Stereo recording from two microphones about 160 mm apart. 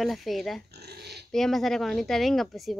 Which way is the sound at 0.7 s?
90° right.